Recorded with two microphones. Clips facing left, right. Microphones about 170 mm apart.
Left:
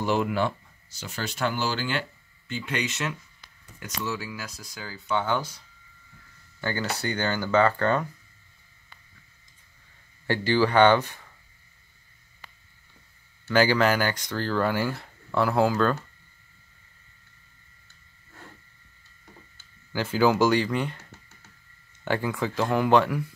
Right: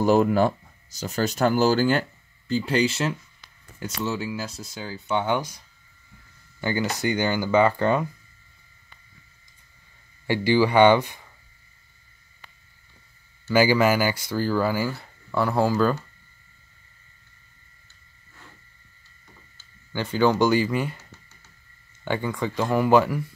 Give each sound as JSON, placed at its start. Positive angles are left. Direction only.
{"t": 0.0, "sound": "speech", "side_deg": -40}
{"t": 6.6, "sound": "speech", "side_deg": -15}
{"t": 10.2, "sound": "speech", "side_deg": -10}
{"t": 13.5, "sound": "speech", "side_deg": -10}
{"t": 19.9, "sound": "speech", "side_deg": 5}
{"t": 22.0, "sound": "speech", "side_deg": 0}